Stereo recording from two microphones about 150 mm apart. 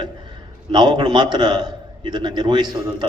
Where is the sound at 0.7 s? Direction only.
30° right (ahead or behind).